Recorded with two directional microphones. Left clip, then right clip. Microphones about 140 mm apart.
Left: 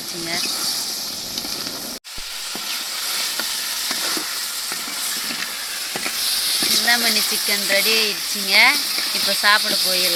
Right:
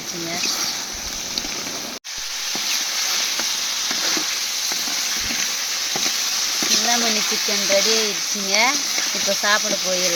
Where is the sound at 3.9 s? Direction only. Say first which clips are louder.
Right 2 dB; 30° right (ahead or behind).